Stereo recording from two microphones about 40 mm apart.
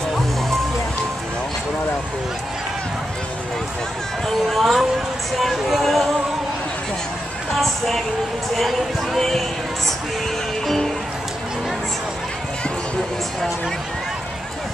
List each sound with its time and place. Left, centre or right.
4.3 s speech: centre
7.5 s speech: centre